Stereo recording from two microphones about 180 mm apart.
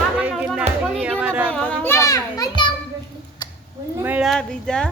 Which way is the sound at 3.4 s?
25° left (ahead or behind).